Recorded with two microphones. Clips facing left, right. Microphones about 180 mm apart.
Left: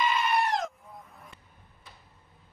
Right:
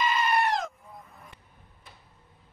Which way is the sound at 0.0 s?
Centre (ahead or behind).